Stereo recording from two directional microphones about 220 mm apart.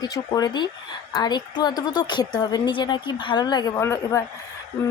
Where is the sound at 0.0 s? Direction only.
15° left (ahead or behind).